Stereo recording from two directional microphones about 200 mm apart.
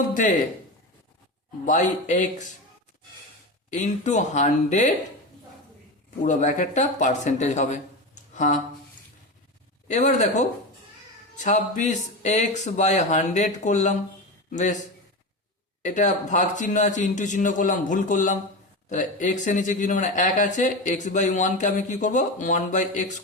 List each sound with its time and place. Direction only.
0.1 s a man's voice: 40° left (ahead or behind)
1.6 s speech: 40° left (ahead or behind)
3.7 s speech: 35° left (ahead or behind)
6.2 s speech: 40° left (ahead or behind)
9.9 s speech: 35° left (ahead or behind)
15.8 s speech: 40° left (ahead or behind)